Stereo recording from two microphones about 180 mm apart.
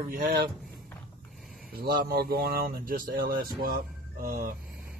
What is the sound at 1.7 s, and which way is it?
Speech, 55° right (ahead or behind).